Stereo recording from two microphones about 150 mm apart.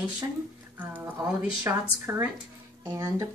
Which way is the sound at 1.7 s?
15° right (ahead or behind).